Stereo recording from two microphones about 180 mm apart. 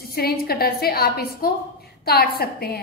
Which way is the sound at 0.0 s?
60° left (ahead or behind).